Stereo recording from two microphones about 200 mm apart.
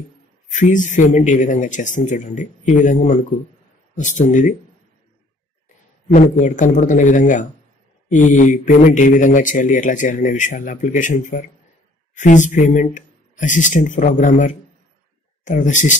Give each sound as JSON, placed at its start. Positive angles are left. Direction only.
{"t": 0.5, "sound": "a man's voice", "side_deg": 40}
{"t": 6.1, "sound": "a man's voice", "side_deg": 40}